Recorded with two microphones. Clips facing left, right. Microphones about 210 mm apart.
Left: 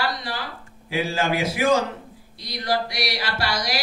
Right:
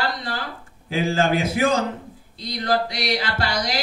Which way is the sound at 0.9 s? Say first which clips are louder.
Right 3 dB; 50° right (ahead or behind).